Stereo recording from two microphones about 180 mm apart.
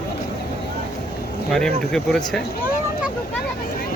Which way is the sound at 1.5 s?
5° left (ahead or behind).